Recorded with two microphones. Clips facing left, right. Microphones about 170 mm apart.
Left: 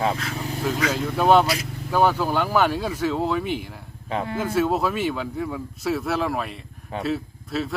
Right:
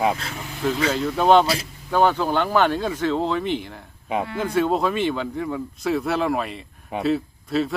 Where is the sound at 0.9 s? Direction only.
5° left (ahead or behind).